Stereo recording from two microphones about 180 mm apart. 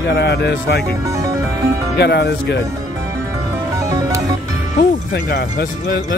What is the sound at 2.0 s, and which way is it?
Speech, 65° left (ahead or behind).